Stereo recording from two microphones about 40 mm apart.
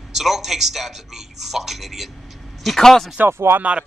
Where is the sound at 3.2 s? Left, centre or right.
Right.